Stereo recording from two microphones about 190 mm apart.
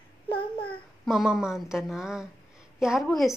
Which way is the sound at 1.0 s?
Centre (ahead or behind).